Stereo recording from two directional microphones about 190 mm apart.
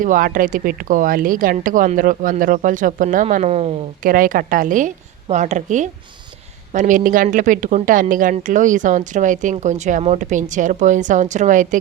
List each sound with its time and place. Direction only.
0.0 s speech: 45° right (ahead or behind)
4.0 s speech: 45° right (ahead or behind)